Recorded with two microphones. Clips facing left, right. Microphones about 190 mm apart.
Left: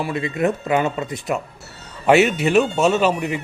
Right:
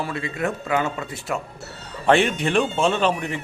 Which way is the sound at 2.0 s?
5° left (ahead or behind).